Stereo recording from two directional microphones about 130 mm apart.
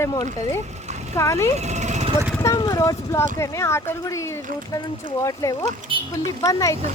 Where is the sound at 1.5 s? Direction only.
60° right (ahead or behind).